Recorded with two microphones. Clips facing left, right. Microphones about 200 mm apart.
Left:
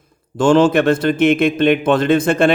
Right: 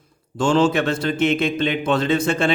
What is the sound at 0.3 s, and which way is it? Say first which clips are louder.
A man's voice: left 5 dB; 55° left (ahead or behind).